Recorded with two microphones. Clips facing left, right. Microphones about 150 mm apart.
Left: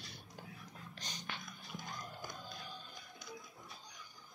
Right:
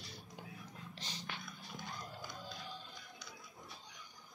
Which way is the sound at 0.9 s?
30° right (ahead or behind).